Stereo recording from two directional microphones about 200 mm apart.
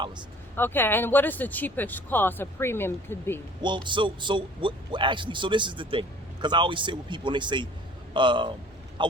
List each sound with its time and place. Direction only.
0.5 s speech: 10° left (ahead or behind)
3.8 s a man's voice: 25° right (ahead or behind)